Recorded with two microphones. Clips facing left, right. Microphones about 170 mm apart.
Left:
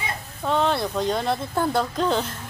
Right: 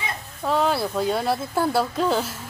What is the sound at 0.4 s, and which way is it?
Speech, 5° right (ahead or behind).